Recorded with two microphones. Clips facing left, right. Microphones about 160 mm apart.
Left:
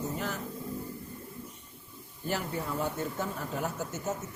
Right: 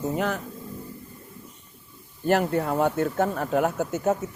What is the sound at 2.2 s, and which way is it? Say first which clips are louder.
Speech: right 11 dB; 70° right (ahead or behind).